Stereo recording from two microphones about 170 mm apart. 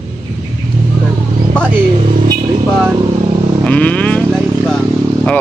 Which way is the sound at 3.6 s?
10° left (ahead or behind).